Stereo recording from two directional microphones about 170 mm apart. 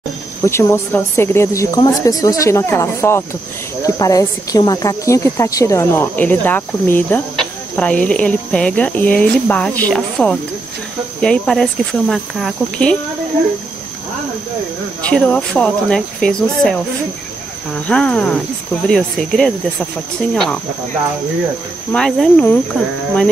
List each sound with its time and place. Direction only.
0.4 s speech: 15° left (ahead or behind)
15.0 s speech: 5° left (ahead or behind)
21.9 s speech: 5° left (ahead or behind)